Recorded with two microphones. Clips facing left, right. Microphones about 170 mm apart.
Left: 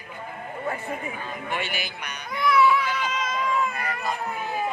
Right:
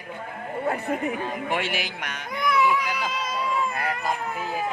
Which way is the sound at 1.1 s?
90° right.